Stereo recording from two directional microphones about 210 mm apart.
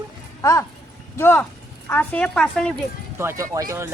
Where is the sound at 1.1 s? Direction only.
10° left (ahead or behind).